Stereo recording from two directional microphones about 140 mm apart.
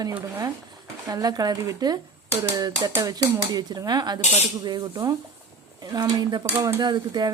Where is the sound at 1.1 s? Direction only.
25° right (ahead or behind).